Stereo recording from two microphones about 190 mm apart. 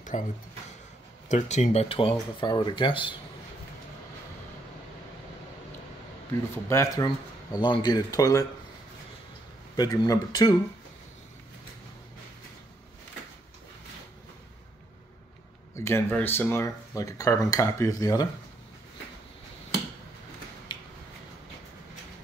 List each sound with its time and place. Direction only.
0.1 s speech: 40° left (ahead or behind)
1.3 s speech: 35° left (ahead or behind)
6.5 s speech: 15° left (ahead or behind)
9.8 s speech: 20° left (ahead or behind)
15.7 s speech: 15° left (ahead or behind)